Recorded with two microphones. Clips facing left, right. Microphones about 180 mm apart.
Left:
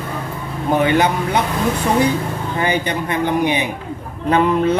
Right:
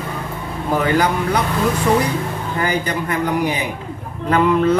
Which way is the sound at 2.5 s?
25° left (ahead or behind).